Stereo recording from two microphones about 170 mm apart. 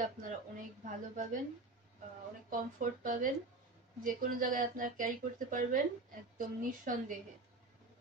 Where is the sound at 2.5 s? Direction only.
55° right (ahead or behind).